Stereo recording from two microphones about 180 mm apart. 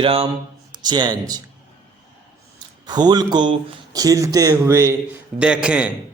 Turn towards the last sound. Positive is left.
turn(degrees=-5)  # may be behind; listen again after turning